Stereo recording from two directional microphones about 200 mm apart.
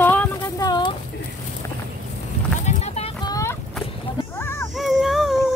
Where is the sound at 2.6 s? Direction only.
35° left (ahead or behind).